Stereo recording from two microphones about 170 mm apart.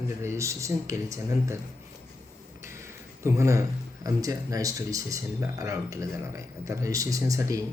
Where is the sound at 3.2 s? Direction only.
15° right (ahead or behind).